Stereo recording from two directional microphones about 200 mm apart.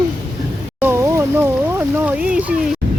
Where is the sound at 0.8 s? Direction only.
15° right (ahead or behind).